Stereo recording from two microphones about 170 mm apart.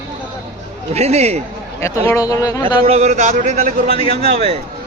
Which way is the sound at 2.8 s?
40° right (ahead or behind).